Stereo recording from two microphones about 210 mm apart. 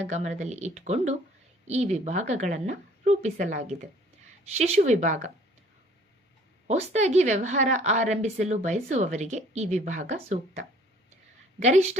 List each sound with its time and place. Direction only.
0.0 s a woman's voice: 35° right (ahead or behind)
6.7 s a woman's voice: 30° right (ahead or behind)